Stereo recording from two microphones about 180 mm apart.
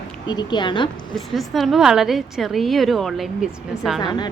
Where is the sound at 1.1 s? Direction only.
Centre (ahead or behind).